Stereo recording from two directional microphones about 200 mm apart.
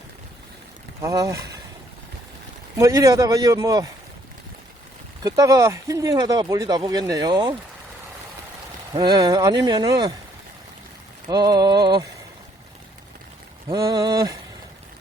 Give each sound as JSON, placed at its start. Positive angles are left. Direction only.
{"t": 1.0, "sound": "speech", "side_deg": -15}
{"t": 2.7, "sound": "speech", "side_deg": -15}
{"t": 5.2, "sound": "speech", "side_deg": -15}
{"t": 8.9, "sound": "speech", "side_deg": -20}
{"t": 11.3, "sound": "speech", "side_deg": -20}
{"t": 13.7, "sound": "speech", "side_deg": -20}